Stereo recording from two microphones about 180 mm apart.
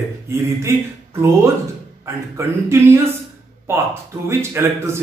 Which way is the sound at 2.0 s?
15° right (ahead or behind).